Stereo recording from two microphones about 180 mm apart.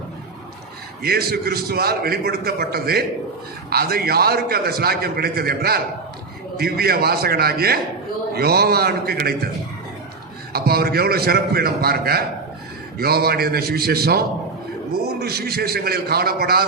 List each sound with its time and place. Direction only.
1.0 s a man's voice: 60° right (ahead or behind)
10.5 s a man's voice: 60° right (ahead or behind)